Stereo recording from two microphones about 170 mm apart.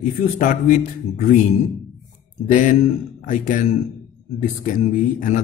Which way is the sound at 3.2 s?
45° left (ahead or behind).